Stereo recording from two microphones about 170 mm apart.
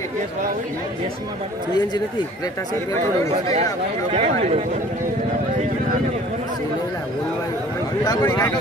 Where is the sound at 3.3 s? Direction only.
35° right (ahead or behind).